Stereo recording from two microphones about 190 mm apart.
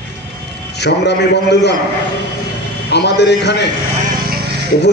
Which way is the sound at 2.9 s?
60° left (ahead or behind).